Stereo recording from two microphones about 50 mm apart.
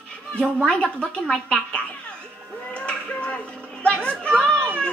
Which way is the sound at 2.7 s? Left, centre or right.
Left.